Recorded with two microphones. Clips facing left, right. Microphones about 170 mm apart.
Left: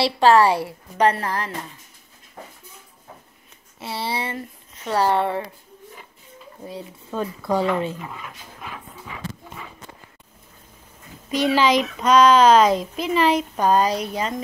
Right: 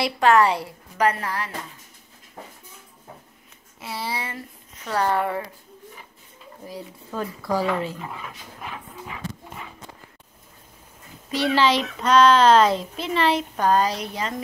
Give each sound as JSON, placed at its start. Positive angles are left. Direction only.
{"t": 0.0, "sound": "a woman's voice", "side_deg": 30}
{"t": 3.8, "sound": "speech", "side_deg": 30}
{"t": 6.6, "sound": "speech", "side_deg": 25}
{"t": 11.3, "sound": "a child's voice", "side_deg": 15}